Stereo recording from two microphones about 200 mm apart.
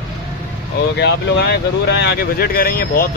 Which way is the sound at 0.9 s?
60° left (ahead or behind).